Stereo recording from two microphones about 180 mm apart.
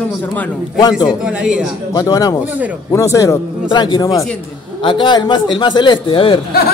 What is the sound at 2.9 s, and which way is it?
A man's voice, 15° left (ahead or behind).